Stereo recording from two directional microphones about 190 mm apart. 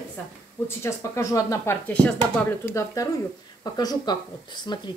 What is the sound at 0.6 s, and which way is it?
Speech, 15° left (ahead or behind).